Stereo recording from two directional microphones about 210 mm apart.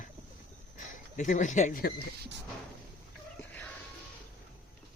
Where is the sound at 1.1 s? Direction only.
35° left (ahead or behind).